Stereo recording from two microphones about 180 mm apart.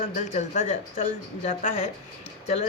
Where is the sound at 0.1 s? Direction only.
40° left (ahead or behind).